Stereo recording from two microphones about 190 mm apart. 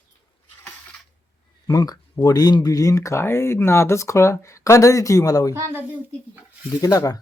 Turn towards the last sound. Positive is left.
turn(degrees=20)  # may be behind; listen again after turning